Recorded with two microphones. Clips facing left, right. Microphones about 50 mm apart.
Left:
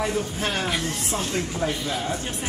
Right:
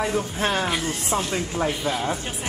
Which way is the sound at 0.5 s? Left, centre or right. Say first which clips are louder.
Right 4 dB; centre.